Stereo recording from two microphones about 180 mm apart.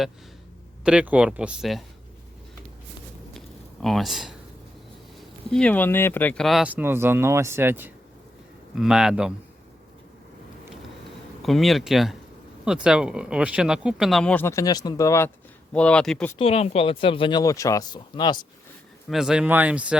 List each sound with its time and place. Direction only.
0.9 s speech: 5° right (ahead or behind)
3.3 s a sound: centre (ahead or behind)
5.5 s speech: 5° left (ahead or behind)
11.4 s speech: centre (ahead or behind); by 15.3 s 15° left (ahead or behind)
15.7 s speech: 5° left (ahead or behind)
16.4 s speech: 35° left (ahead or behind)
19.0 s speech: centre (ahead or behind)